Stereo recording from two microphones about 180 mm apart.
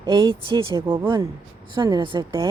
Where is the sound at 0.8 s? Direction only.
15° right (ahead or behind).